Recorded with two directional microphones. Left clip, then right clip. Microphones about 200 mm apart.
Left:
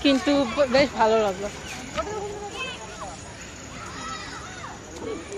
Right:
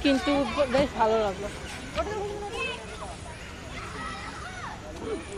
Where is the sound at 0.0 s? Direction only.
20° left (ahead or behind).